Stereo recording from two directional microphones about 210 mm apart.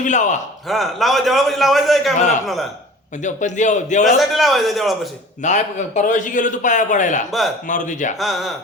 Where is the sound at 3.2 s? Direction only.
35° left (ahead or behind).